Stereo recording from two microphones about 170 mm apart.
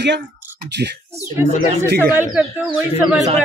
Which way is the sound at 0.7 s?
80° right.